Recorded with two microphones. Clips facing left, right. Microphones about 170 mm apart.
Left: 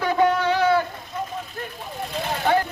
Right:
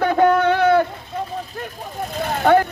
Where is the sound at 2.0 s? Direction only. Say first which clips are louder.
Right 5 dB; 55° right (ahead or behind).